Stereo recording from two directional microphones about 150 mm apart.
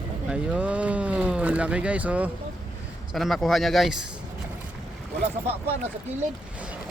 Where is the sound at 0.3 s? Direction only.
5° right (ahead or behind).